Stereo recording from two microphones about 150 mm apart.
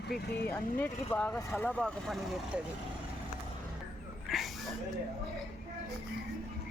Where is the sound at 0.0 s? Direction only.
90° left.